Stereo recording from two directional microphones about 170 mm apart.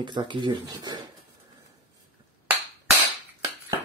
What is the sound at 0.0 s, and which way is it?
Speech, 25° right (ahead or behind).